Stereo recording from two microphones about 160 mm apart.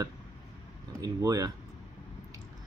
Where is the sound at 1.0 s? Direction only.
20° right (ahead or behind).